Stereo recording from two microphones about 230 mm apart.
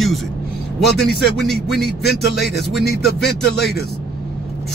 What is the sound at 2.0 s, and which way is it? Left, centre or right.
Speech, left.